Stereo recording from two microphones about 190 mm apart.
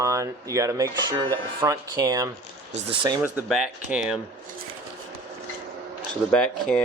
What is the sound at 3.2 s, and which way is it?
Speech, 5° right (ahead or behind).